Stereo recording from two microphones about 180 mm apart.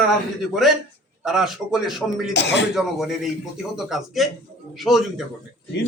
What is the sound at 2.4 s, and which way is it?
Speech, 75° left (ahead or behind).